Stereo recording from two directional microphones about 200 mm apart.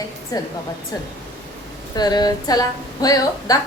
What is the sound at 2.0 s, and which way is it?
Speech, 20° left (ahead or behind).